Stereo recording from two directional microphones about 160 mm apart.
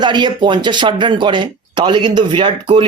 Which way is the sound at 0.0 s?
30° right (ahead or behind).